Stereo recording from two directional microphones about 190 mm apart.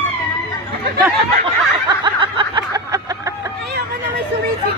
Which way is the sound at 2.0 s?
25° right (ahead or behind).